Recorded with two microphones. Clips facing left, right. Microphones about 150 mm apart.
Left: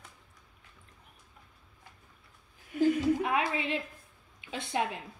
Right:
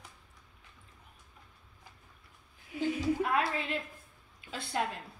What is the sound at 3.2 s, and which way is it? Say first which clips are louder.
A woman's voice: left 1 dB; 15° left (ahead or behind).